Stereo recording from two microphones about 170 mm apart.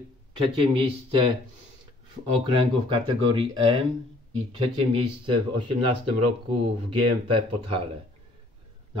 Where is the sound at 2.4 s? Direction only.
25° right (ahead or behind).